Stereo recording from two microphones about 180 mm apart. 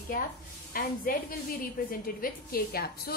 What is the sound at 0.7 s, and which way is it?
A woman's voice, 55° left (ahead or behind).